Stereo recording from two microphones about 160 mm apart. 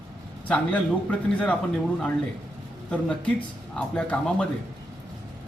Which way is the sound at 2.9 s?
5° left (ahead or behind).